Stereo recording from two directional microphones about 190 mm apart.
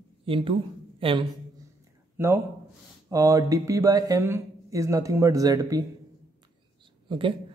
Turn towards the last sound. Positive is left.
turn(degrees=-25)  # may be behind; listen again after turning